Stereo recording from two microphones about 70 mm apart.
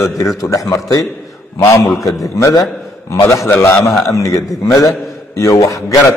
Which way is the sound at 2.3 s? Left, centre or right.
Left.